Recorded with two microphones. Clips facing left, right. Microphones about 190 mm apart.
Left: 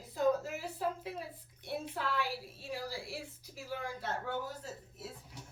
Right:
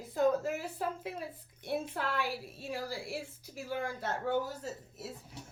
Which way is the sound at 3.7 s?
50° right (ahead or behind).